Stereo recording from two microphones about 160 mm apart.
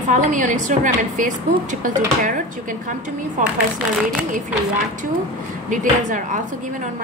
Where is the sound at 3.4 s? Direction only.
55° right (ahead or behind).